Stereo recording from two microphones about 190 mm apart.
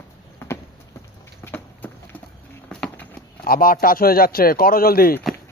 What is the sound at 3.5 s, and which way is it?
Speech, 50° left (ahead or behind).